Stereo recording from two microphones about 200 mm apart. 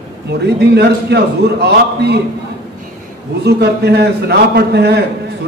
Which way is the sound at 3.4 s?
55° right (ahead or behind).